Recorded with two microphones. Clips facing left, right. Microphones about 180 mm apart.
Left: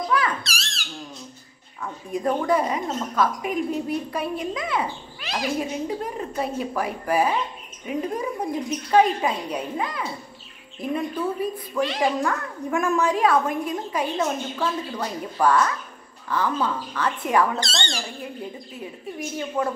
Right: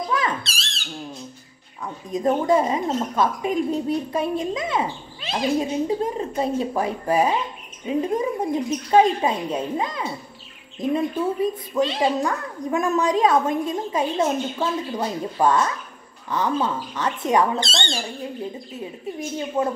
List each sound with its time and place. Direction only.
0.1 s music: 25° right (ahead or behind)
1.8 s a woman's voice: 20° right (ahead or behind)
11.7 s a woman's voice: 25° right (ahead or behind)